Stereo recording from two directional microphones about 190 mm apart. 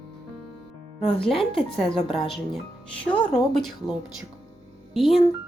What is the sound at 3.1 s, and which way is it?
Speech, centre (ahead or behind).